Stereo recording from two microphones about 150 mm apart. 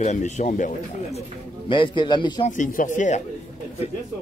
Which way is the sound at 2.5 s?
60° left (ahead or behind).